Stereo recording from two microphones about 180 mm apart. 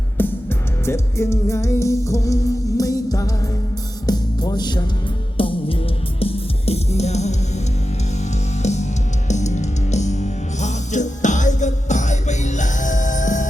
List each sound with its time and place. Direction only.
0.2 s music: 10° left (ahead or behind); by 7.3 s 40° left (ahead or behind)
8.6 s music: 40° left (ahead or behind)